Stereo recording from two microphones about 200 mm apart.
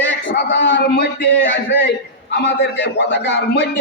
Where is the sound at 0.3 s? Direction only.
60° left (ahead or behind).